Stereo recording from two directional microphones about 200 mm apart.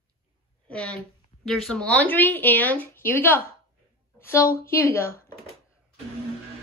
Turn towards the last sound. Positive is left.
turn(degrees=10)  # may be behind; listen again after turning